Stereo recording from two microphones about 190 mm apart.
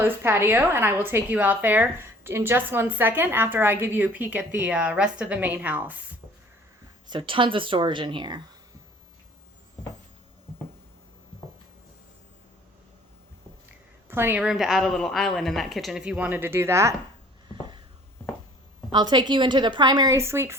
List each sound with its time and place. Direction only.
0.0 s a woman's voice: 10° right (ahead or behind)
7.1 s speech: 25° right (ahead or behind)
14.1 s a woman's voice: 10° right (ahead or behind)
17.5 s a sound: 25° right (ahead or behind)
18.9 s speech: 20° right (ahead or behind)